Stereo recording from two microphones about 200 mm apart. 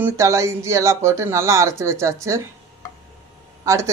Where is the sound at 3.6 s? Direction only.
15° right (ahead or behind).